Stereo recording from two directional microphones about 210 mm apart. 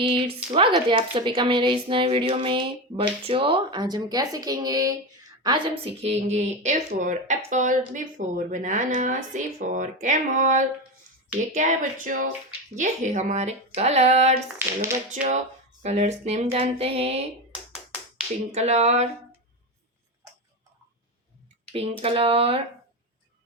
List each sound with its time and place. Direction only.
0.5 s speech: 25° right (ahead or behind)
14.6 s speech: 10° right (ahead or behind)
15.1 s speech: 35° right (ahead or behind)
18.5 s speech: 30° right (ahead or behind)
21.7 s speech: 30° right (ahead or behind)